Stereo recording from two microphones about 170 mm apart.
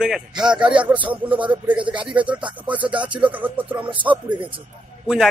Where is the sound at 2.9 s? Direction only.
30° right (ahead or behind).